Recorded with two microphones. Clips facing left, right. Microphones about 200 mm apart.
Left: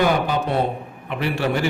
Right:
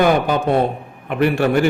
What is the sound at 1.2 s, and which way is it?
Speech, 50° right (ahead or behind).